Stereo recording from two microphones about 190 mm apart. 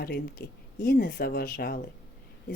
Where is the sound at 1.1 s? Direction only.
50° left (ahead or behind).